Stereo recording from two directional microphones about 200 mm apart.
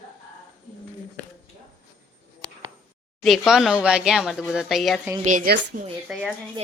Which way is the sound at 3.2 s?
Centre (ahead or behind).